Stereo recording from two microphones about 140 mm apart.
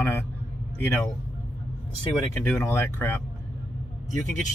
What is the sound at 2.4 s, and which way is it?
Speech, 20° left (ahead or behind).